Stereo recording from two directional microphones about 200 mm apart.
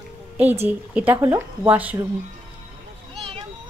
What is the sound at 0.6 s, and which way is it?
Speech, 10° right (ahead or behind).